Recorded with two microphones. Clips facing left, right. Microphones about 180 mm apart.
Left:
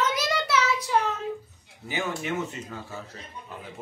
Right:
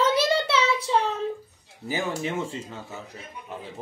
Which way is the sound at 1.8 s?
30° right (ahead or behind).